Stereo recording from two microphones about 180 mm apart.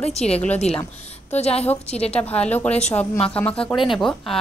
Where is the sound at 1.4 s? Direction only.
35° left (ahead or behind).